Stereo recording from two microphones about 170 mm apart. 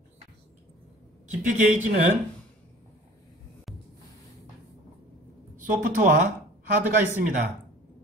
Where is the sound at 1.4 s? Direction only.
50° right (ahead or behind).